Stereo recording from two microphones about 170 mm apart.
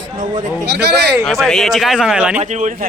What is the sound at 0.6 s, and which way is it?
Speech, 80° right.